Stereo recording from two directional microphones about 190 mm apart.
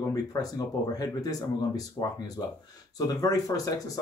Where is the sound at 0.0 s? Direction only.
20° left (ahead or behind).